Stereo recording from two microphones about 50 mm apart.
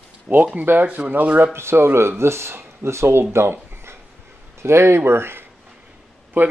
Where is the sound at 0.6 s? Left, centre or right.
Right.